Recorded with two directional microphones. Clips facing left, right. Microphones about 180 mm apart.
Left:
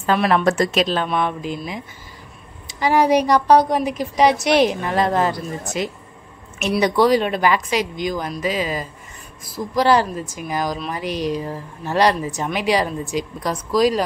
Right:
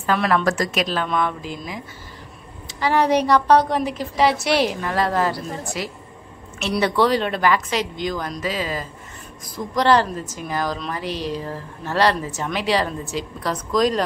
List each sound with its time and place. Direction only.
0.2 s a woman's voice: 15° left (ahead or behind)
0.5 s speech: 25° left (ahead or behind)
2.8 s a woman's voice: 10° left (ahead or behind)